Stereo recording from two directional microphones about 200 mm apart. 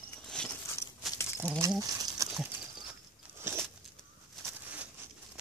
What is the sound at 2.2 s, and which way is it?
Horse, 15° right (ahead or behind).